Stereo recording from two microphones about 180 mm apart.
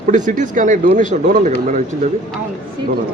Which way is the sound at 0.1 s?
45° right (ahead or behind).